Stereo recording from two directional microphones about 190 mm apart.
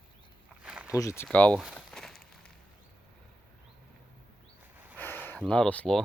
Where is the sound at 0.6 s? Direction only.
5° right (ahead or behind).